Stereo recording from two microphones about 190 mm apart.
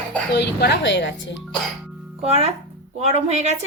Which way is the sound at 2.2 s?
30° right (ahead or behind).